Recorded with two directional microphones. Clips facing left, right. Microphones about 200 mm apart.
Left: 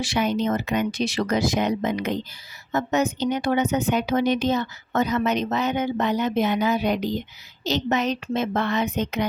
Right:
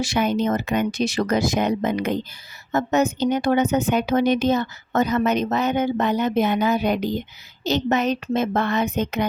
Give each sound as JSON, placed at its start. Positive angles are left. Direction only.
{"t": 0.0, "sound": "a woman's voice", "side_deg": -50}